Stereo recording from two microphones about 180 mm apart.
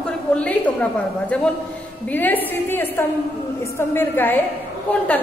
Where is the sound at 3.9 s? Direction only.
10° left (ahead or behind).